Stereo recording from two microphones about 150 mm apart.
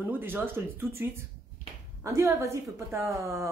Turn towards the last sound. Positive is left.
turn(degrees=-20)  # may be behind; listen again after turning